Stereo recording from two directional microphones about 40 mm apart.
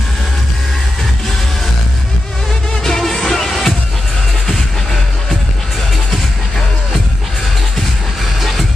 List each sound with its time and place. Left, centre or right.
2.8 s music: centre
8.4 s music: centre